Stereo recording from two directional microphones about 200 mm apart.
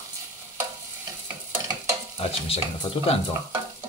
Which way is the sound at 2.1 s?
30° left (ahead or behind).